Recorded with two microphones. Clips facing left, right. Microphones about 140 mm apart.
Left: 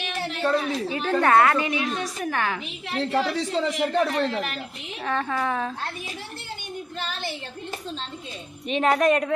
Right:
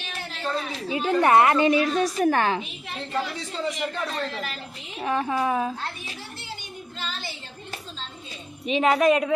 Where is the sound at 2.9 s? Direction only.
85° left.